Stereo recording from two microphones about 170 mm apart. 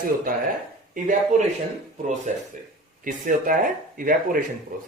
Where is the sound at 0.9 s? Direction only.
50° right (ahead or behind).